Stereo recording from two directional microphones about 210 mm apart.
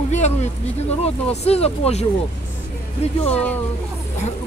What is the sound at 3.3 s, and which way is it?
Speech, 5° left (ahead or behind).